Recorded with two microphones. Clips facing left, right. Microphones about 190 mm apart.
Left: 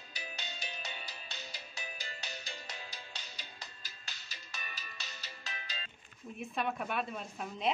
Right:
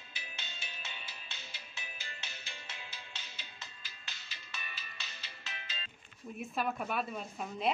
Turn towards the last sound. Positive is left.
turn(degrees=0)  # may be behind; listen again after turning